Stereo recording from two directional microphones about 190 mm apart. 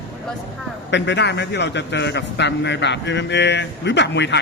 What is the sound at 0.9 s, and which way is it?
A man's voice, 65° left (ahead or behind).